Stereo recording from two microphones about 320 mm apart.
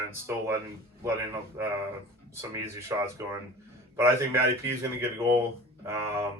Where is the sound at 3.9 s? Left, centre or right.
Centre.